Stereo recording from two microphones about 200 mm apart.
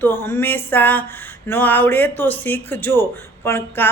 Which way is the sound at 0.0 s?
10° left (ahead or behind).